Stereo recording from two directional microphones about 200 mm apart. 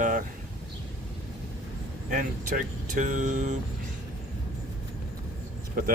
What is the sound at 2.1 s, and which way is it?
Speech, 45° right (ahead or behind).